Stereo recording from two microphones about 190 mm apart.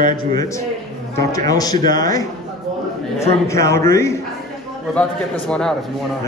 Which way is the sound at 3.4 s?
15° left (ahead or behind).